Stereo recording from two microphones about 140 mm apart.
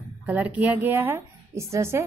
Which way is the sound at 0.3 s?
10° right (ahead or behind).